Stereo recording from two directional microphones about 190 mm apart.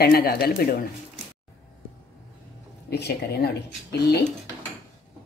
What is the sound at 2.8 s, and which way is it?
Speech, 60° left (ahead or behind).